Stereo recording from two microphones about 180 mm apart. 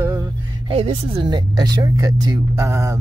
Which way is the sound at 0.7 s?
30° right (ahead or behind).